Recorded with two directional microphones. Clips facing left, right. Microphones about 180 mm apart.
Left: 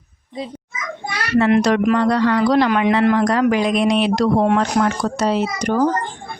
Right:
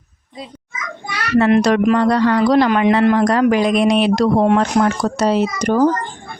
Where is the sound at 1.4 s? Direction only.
40° right (ahead or behind).